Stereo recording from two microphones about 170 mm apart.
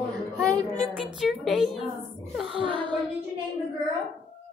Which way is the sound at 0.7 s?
Centre (ahead or behind).